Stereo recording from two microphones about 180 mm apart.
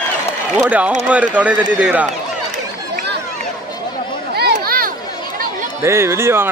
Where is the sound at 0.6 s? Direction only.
10° right (ahead or behind).